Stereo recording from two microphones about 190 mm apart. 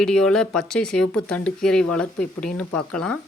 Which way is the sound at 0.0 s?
5° left (ahead or behind).